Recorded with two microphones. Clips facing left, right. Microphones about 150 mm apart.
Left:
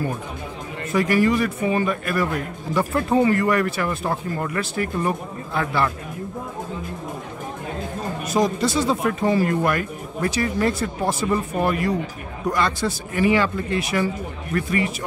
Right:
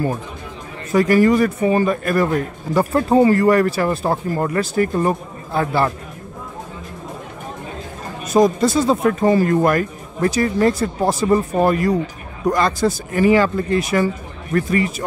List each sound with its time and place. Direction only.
0.9 s a man's voice: 45° right (ahead or behind)
8.4 s a man's voice: 45° right (ahead or behind)